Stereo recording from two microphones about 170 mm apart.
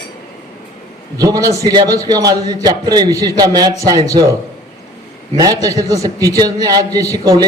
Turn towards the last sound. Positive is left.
turn(degrees=-20)  # may be behind; listen again after turning